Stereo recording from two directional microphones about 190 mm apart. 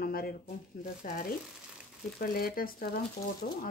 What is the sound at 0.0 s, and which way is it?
Speech, 50° left (ahead or behind).